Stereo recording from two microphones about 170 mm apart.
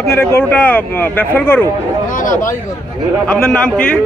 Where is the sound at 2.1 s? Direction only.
50° left (ahead or behind).